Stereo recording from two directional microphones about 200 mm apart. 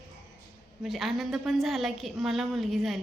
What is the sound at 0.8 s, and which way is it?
A woman's voice, centre (ahead or behind).